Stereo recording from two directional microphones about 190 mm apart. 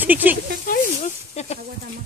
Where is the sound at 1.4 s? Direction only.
35° left (ahead or behind).